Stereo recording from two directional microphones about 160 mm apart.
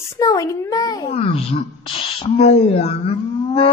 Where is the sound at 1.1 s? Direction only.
40° left (ahead or behind).